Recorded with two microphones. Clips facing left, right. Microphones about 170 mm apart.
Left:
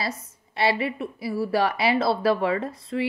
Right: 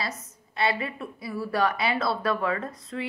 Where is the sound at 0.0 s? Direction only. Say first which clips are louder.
Left 3 dB; 30° left (ahead or behind).